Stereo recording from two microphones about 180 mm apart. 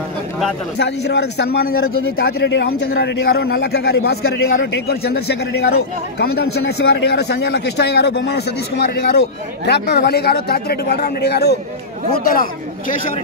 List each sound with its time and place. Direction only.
0.7 s a man's voice: 70° left (ahead or behind)
12.1 s a man's voice: 55° left (ahead or behind)